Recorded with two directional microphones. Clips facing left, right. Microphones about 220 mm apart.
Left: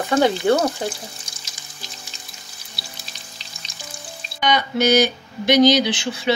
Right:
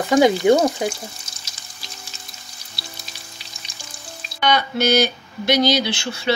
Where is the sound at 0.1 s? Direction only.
15° right (ahead or behind).